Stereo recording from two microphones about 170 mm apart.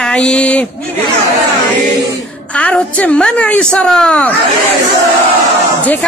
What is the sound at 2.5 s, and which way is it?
Speech, 10° left (ahead or behind).